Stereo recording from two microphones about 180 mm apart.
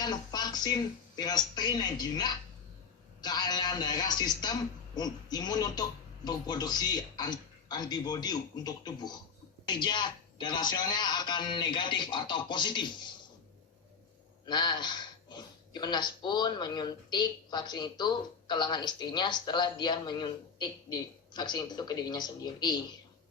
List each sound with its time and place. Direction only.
0.0 s speech: 20° left (ahead or behind)
14.4 s speech: 25° left (ahead or behind)